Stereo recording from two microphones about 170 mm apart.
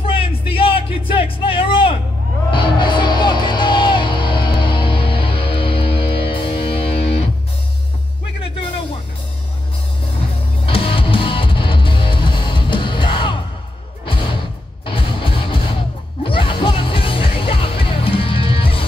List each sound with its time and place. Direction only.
0.0 s music: 30° left (ahead or behind)
10.6 s music: 30° left (ahead or behind)
14.9 s music: 30° left (ahead or behind)